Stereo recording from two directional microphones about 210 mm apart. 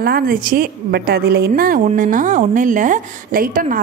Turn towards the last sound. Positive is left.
turn(degrees=-40)  # may be behind; listen again after turning